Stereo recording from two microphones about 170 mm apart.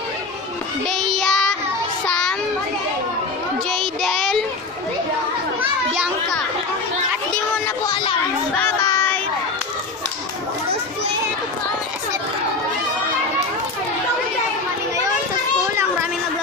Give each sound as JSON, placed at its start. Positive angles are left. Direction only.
{"t": 0.8, "sound": "child singing", "side_deg": 0}
{"t": 3.7, "sound": "child singing", "side_deg": 0}
{"t": 7.6, "sound": "a sound", "side_deg": 20}
{"t": 8.5, "sound": "child singing", "side_deg": 15}